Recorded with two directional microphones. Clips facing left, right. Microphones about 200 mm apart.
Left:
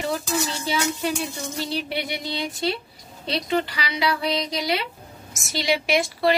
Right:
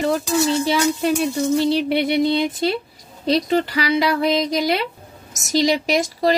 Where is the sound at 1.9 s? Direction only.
60° right (ahead or behind).